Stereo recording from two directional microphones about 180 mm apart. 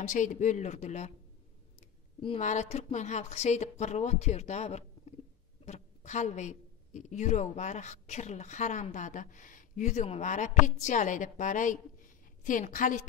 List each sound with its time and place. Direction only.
0.0 s a woman's voice: 45° left (ahead or behind)